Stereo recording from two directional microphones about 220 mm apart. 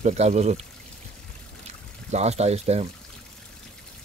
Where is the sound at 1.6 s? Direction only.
30° right (ahead or behind).